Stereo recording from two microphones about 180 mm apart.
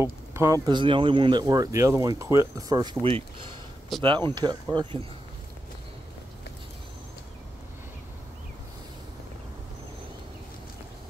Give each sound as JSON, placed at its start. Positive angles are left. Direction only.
{"t": 0.0, "sound": "speech", "side_deg": -15}
{"t": 3.9, "sound": "speech", "side_deg": 0}
{"t": 4.4, "sound": "speech", "side_deg": -25}